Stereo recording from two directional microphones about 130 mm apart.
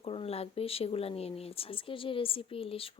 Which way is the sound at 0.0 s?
50° left (ahead or behind).